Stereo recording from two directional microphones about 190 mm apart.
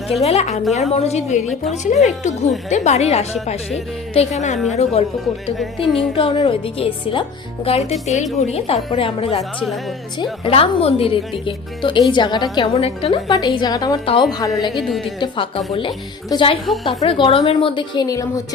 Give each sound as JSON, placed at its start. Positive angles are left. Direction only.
{"t": 0.2, "sound": "a woman's voice", "side_deg": 35}
{"t": 4.5, "sound": "speech", "side_deg": 0}
{"t": 4.8, "sound": "a woman's voice", "side_deg": 30}
{"t": 5.5, "sound": "speech", "side_deg": 0}
{"t": 6.1, "sound": "a woman's voice", "side_deg": 30}
{"t": 9.4, "sound": "speech", "side_deg": 0}
{"t": 10.4, "sound": "speech", "side_deg": 30}
{"t": 14.8, "sound": "speech", "side_deg": 0}
{"t": 15.2, "sound": "speech", "side_deg": 30}